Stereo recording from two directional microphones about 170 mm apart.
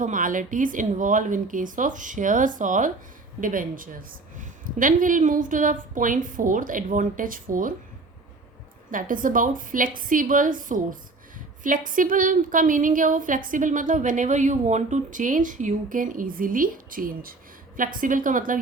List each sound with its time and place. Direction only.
0.0 s a woman's voice: 50° right (ahead or behind)
8.9 s a woman's voice: 50° right (ahead or behind)